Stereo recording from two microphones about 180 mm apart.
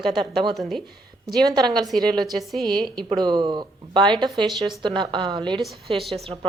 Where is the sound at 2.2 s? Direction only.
Centre (ahead or behind).